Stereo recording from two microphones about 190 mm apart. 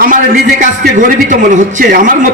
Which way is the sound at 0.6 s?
45° right (ahead or behind).